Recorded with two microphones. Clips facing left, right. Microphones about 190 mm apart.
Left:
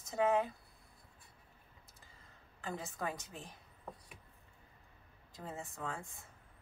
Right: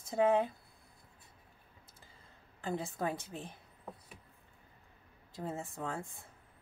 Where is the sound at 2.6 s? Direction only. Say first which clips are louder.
Right 5 dB; 30° right (ahead or behind).